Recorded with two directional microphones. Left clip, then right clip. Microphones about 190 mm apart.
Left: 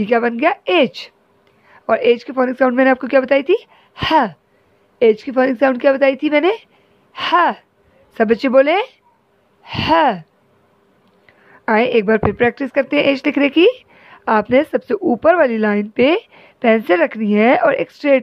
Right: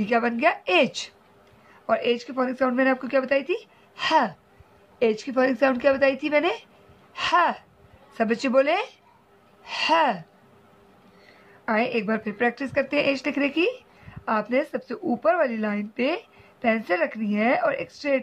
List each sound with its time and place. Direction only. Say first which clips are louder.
0.0 s a woman's voice: left 7 dB; 40° left (ahead or behind)
11.6 s a woman's voice: left 10 dB; 45° left (ahead or behind)